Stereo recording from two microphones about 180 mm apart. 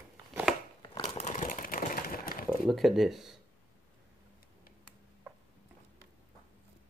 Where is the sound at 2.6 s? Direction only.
Centre (ahead or behind).